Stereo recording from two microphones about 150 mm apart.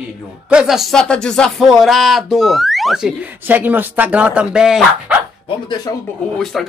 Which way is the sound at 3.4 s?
10° right (ahead or behind).